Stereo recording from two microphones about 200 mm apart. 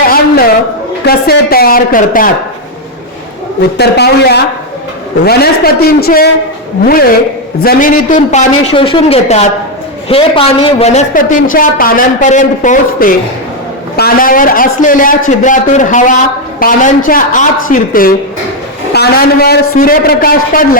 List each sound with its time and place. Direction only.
0.1 s a sound: 50° left (ahead or behind)
1.0 s a man's voice: 50° left (ahead or behind)
3.8 s a man's voice: 55° left (ahead or behind)